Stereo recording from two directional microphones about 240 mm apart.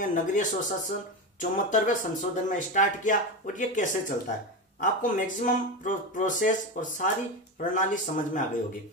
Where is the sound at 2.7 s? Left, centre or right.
Left.